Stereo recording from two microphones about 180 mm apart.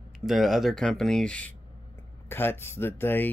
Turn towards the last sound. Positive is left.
turn(degrees=10)  # may be behind; listen again after turning